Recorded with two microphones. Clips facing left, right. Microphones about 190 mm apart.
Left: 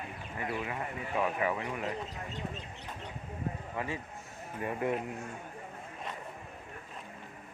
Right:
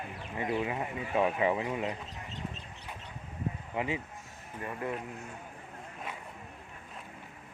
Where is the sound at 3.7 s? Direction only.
15° right (ahead or behind).